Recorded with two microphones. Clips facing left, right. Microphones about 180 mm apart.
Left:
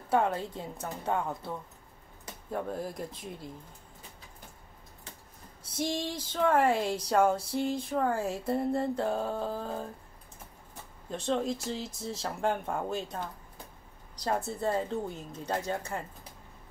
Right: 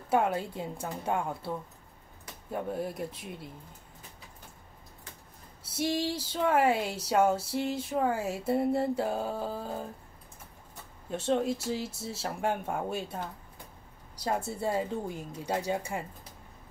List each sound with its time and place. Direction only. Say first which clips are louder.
0.1 s speech: even; 10° right (ahead or behind)
5.8 s speech: right 3 dB; 5° right (ahead or behind)
11.1 s speech: right 2 dB; 5° right (ahead or behind)